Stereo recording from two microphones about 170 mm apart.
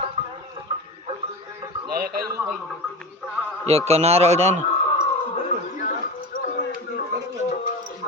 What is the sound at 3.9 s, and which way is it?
Speech, 40° right (ahead or behind).